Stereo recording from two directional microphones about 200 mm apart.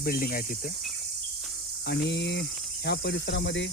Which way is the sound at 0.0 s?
45° left (ahead or behind).